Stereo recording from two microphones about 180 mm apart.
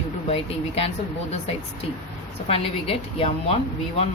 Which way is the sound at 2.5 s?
30° left (ahead or behind).